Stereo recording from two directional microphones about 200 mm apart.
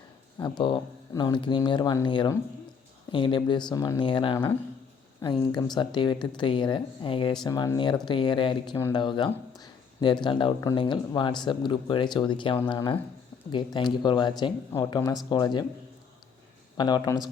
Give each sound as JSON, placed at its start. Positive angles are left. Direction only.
{"t": 0.3, "sound": "speech", "side_deg": 20}
{"t": 16.7, "sound": "speech", "side_deg": 20}